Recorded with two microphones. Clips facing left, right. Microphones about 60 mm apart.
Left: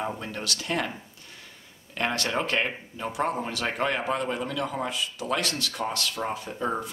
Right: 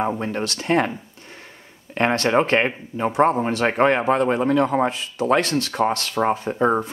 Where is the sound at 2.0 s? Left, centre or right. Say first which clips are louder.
Right 9 dB; right.